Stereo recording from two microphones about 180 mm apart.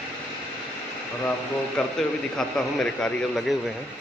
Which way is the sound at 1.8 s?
5° left (ahead or behind).